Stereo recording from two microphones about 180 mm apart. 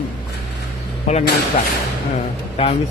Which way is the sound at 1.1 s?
35° left (ahead or behind).